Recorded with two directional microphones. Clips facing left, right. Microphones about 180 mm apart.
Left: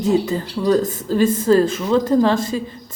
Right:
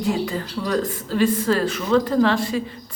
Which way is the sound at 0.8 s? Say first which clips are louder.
Left 3 dB; 45° left (ahead or behind).